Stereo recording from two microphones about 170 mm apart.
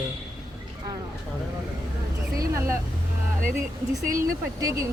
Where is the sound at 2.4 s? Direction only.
15° right (ahead or behind).